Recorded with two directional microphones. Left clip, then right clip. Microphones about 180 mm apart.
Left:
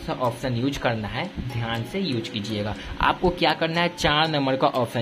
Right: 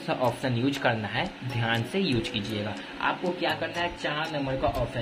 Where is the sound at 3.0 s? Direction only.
35° left (ahead or behind).